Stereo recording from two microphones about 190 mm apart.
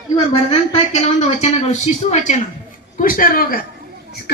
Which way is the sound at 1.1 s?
35° left (ahead or behind).